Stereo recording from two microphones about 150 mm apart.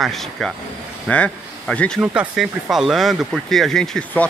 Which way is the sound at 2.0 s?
5° right (ahead or behind).